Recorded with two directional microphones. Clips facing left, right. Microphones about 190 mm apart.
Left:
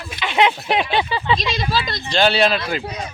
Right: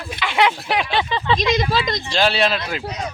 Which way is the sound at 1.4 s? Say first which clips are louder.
Right 3 dB; 15° right (ahead or behind).